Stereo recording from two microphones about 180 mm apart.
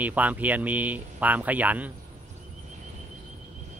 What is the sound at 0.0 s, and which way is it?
Speech, 10° right (ahead or behind).